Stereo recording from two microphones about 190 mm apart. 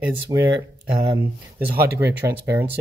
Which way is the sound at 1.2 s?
10° right (ahead or behind).